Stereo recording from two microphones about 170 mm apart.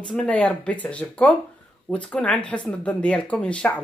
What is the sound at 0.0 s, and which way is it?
Speech, 5° left (ahead or behind).